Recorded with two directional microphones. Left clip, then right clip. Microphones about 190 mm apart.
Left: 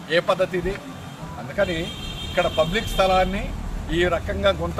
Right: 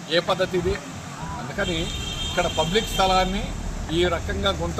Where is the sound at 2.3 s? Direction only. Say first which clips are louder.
Left 2 dB; 5° left (ahead or behind).